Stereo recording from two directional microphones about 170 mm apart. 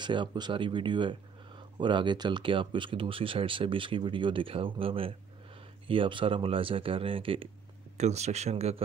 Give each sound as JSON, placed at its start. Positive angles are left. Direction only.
{"t": 0.0, "sound": "speech", "side_deg": -25}